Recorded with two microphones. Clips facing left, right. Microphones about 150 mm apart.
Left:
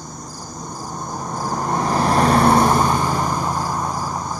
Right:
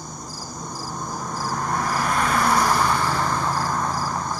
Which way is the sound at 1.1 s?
20° left (ahead or behind).